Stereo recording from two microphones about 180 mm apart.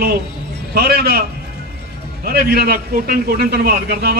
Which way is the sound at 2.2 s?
60° right (ahead or behind).